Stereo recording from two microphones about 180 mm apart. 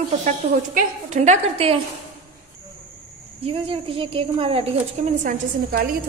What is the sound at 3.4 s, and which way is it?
Speech, 30° right (ahead or behind).